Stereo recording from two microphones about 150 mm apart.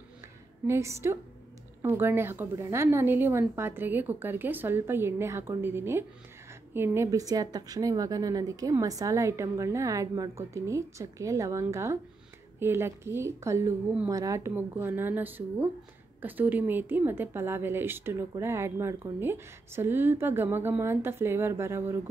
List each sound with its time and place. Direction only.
0.7 s a woman's voice: 20° right (ahead or behind)